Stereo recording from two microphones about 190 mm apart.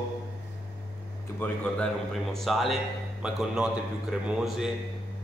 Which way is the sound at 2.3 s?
Centre (ahead or behind).